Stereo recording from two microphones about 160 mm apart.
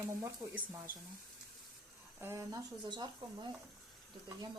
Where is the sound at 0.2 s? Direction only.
20° right (ahead or behind).